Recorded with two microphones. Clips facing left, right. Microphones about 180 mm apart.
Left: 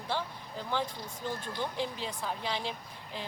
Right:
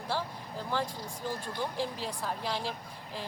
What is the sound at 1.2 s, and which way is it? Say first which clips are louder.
Speech: even; 5° right (ahead or behind).